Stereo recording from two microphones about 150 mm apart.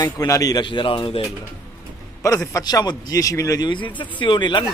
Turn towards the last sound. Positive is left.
turn(degrees=30)  # may be behind; listen again after turning